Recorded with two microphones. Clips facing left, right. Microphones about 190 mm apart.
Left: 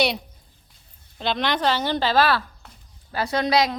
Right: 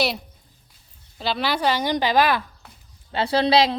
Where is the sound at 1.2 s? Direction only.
5° right (ahead or behind).